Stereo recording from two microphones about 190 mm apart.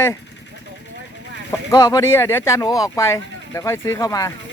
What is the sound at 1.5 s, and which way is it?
Speech, 20° left (ahead or behind).